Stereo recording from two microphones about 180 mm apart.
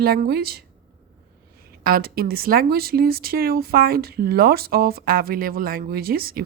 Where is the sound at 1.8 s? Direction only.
55° right (ahead or behind).